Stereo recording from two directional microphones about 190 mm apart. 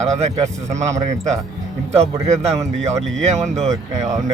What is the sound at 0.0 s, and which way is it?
Speech, 35° right (ahead or behind).